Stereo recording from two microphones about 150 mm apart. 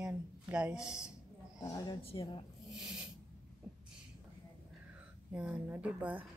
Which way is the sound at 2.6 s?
5° right (ahead or behind).